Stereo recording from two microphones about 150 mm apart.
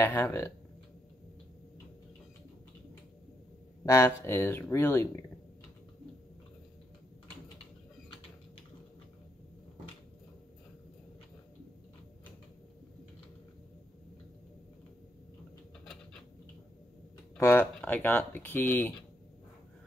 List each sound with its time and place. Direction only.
0.0 s speech: 15° left (ahead or behind)
3.8 s speech: 20° left (ahead or behind)
15.8 s patter: 5° left (ahead or behind)
17.4 s speech: 15° left (ahead or behind)